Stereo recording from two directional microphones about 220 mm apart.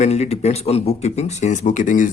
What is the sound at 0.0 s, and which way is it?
Speech, 30° left (ahead or behind).